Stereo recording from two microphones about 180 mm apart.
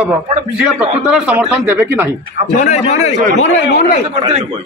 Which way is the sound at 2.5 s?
40° left (ahead or behind).